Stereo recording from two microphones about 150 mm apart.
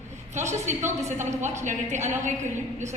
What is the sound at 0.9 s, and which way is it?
A woman's voice, 50° right (ahead or behind).